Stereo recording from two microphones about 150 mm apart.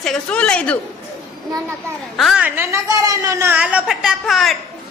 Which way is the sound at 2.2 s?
5° right (ahead or behind).